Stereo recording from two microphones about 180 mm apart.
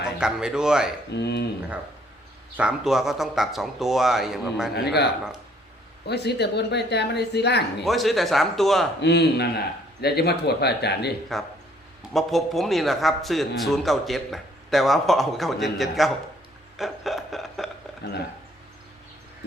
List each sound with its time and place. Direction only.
0.2 s speech: 5° right (ahead or behind)
1.1 s a man's voice: 65° left (ahead or behind)
2.6 s speech: 5° right (ahead or behind)
6.1 s speech: 65° left (ahead or behind)
7.9 s speech: centre (ahead or behind)
9.0 s a man's voice: 65° left (ahead or behind)
11.3 s speech: centre (ahead or behind)
16.7 s a sound: centre (ahead or behind)
18.0 s a man's voice: 65° left (ahead or behind)